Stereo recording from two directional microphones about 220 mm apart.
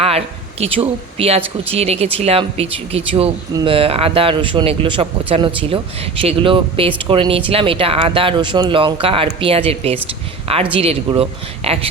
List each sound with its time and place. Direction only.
0.6 s speech: 25° right (ahead or behind)